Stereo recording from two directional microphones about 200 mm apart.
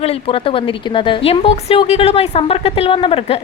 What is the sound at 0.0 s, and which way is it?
A woman's voice, 30° left (ahead or behind).